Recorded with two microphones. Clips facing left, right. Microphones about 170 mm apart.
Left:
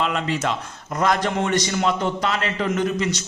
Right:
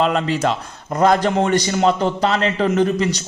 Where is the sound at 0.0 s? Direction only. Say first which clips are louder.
Right 5 dB; 35° right (ahead or behind).